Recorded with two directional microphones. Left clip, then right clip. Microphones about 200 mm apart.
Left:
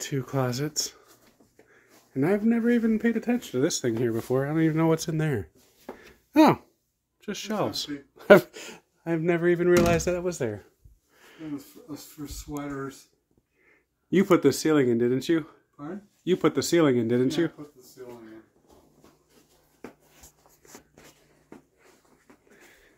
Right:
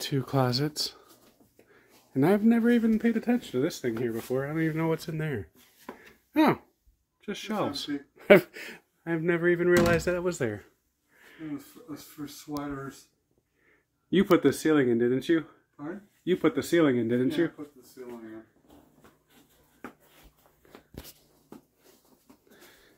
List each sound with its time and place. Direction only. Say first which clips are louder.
0.0 s a man's voice: right 1 dB; 15° right (ahead or behind); by 3.5 s 5° left (ahead or behind)
3.5 s speech: left 3 dB; 20° left (ahead or behind)
5.9 s a sound: left 5 dB; 20° left (ahead or behind)
7.2 s speech: left 2 dB; 10° left (ahead or behind)
10.2 s speech: left 1 dB; centre (ahead or behind)
11.1 s a sound: left 1 dB; 15° left (ahead or behind)
14.1 s speech: left 2 dB; 5° left (ahead or behind)